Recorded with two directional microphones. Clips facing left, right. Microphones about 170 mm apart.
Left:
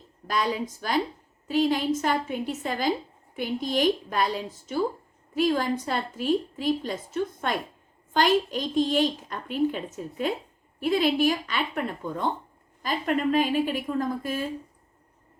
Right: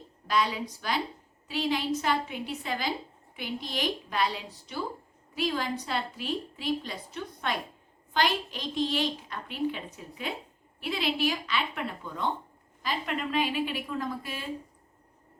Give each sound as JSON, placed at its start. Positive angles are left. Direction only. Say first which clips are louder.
{"t": 0.3, "sound": "a woman's voice", "louder": "left 1 dB", "side_deg": 45}